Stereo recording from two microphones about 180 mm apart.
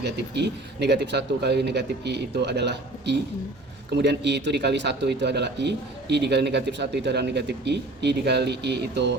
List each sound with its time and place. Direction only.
0.0 s speech: 70° right (ahead or behind)